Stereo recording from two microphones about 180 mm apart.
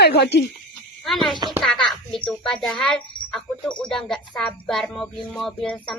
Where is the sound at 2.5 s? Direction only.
5° left (ahead or behind).